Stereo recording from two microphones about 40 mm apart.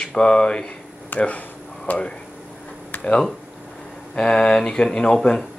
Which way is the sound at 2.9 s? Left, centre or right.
Left.